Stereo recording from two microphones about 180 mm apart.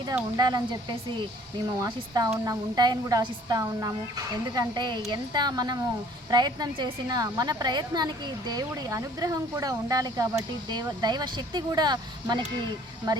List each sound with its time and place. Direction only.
0.3 s a woman's voice: 20° right (ahead or behind)